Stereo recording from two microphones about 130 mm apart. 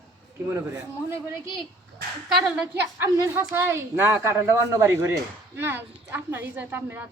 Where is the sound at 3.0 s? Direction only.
20° right (ahead or behind).